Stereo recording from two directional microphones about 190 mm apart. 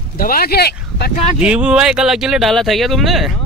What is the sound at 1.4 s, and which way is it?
Speech, 5° right (ahead or behind).